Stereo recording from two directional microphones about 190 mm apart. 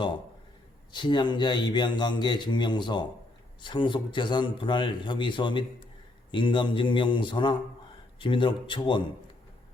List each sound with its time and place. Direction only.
0.9 s a man's voice: 25° left (ahead or behind)